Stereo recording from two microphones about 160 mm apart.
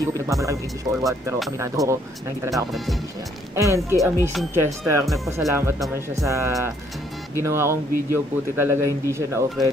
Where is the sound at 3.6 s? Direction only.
20° right (ahead or behind).